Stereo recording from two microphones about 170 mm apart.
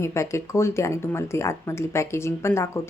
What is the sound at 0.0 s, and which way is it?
Speech, 15° left (ahead or behind).